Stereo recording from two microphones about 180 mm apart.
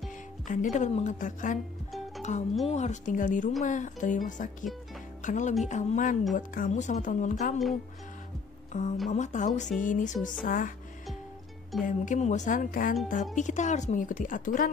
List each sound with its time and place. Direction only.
0.5 s speech: 45° left (ahead or behind)
8.7 s speech: 40° left (ahead or behind)
11.8 s speech: 45° left (ahead or behind)